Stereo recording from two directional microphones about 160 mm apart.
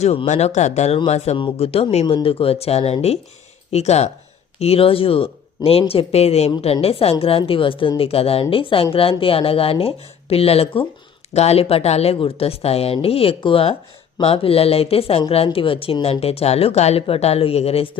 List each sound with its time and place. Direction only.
0.0 s a woman's voice: 40° left (ahead or behind)